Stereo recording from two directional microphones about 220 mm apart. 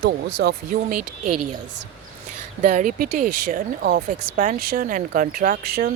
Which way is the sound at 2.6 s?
35° right (ahead or behind).